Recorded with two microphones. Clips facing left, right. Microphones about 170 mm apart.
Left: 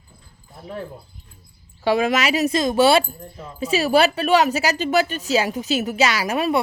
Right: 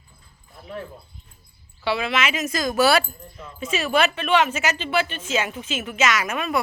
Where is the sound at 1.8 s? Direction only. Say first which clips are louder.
Left 5 dB; 45° left (ahead or behind).